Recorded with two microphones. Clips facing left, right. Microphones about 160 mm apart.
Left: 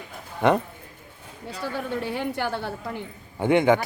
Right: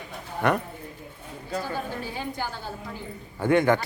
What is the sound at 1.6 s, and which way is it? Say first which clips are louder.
A woman's voice: left 3 dB; 65° left (ahead or behind).